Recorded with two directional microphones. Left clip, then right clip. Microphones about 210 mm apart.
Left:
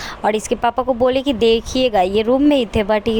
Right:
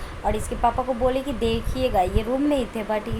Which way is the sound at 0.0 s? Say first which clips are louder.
Left 8 dB; 45° left (ahead or behind).